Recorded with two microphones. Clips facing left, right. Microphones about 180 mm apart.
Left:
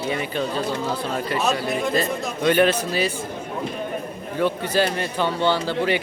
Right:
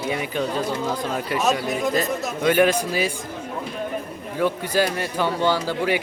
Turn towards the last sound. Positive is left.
turn(degrees=-10)  # may be behind; listen again after turning